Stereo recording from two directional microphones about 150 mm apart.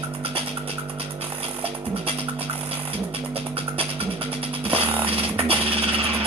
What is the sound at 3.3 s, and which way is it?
Music, 40° right (ahead or behind).